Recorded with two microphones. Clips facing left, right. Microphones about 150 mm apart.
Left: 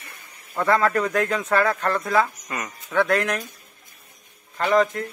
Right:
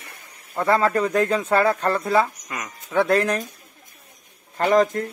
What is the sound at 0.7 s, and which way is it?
Speech, 30° right (ahead or behind).